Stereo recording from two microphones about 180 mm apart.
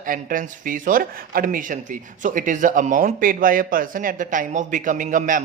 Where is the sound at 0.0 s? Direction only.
50° right (ahead or behind).